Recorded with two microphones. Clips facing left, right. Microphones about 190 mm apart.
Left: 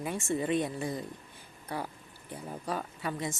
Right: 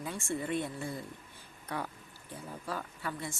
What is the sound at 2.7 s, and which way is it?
Speech, 20° left (ahead or behind).